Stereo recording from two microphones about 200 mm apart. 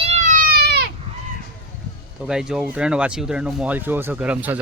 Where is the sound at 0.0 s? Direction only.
35° right (ahead or behind); by 0.9 s 55° right (ahead or behind).